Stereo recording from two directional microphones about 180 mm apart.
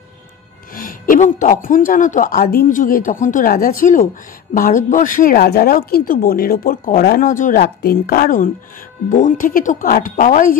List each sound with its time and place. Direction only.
0.7 s speech: 50° left (ahead or behind)